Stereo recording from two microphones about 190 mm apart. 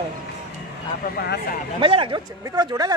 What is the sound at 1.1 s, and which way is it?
Speech, 60° left (ahead or behind).